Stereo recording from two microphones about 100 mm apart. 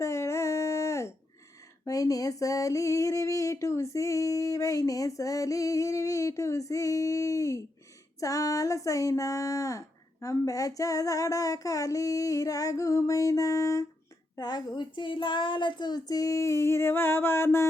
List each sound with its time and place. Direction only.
0.0 s a sound: 30° left (ahead or behind)
8.2 s speech: 35° left (ahead or behind)
14.3 s speech: 45° left (ahead or behind); by 17.7 s 25° left (ahead or behind)